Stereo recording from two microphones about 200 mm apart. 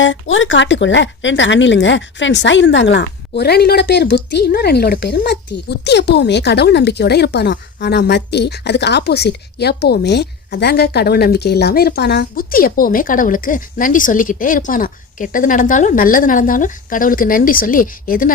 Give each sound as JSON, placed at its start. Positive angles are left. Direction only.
{"t": 0.0, "sound": "speech", "side_deg": 70}